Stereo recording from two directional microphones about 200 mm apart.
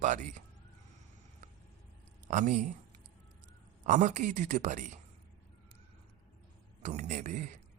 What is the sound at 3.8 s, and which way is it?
Speech, 40° right (ahead or behind).